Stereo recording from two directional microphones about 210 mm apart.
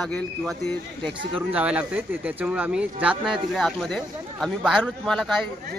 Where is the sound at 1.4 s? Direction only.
5° right (ahead or behind).